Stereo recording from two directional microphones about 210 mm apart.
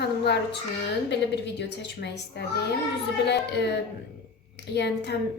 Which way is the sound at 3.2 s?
55° left (ahead or behind).